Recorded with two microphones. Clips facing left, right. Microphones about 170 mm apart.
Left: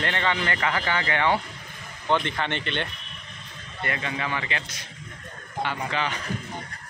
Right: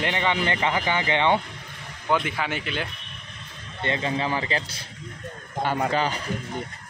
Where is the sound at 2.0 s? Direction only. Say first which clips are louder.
Even; 5° right (ahead or behind).